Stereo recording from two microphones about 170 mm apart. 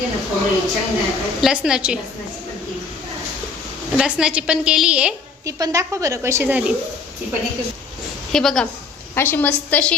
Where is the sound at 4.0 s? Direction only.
5° right (ahead or behind).